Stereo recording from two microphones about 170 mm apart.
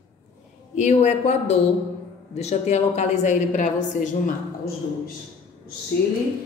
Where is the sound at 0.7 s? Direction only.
40° left (ahead or behind).